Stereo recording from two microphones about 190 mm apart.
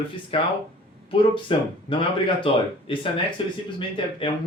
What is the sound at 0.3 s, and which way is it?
Speech, 30° left (ahead or behind).